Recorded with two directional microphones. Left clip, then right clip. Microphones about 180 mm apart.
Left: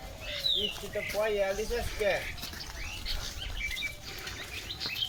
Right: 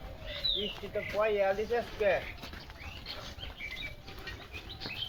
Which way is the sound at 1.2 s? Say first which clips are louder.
Right 1 dB; 15° left (ahead or behind).